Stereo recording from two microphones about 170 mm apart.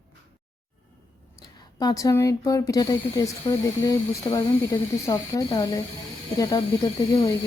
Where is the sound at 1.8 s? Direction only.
20° left (ahead or behind).